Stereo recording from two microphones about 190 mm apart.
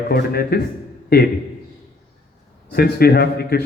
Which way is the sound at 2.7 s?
55° left (ahead or behind).